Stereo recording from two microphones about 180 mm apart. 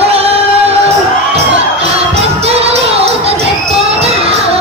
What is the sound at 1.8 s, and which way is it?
Music, 35° right (ahead or behind).